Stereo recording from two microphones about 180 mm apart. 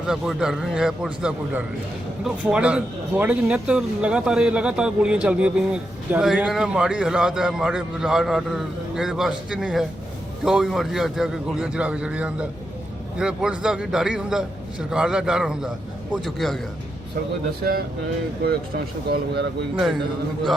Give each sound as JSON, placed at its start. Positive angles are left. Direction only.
{"t": 0.0, "sound": "speech", "side_deg": -5}
{"t": 17.6, "sound": "speech", "side_deg": -55}
{"t": 19.1, "sound": "speech", "side_deg": -65}
{"t": 19.7, "sound": "speech", "side_deg": 0}